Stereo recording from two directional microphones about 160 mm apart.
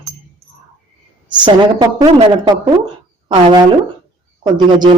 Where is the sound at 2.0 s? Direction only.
25° right (ahead or behind).